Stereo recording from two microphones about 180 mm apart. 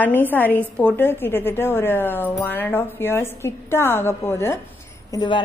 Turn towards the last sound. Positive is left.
turn(degrees=25)  # may be behind; listen again after turning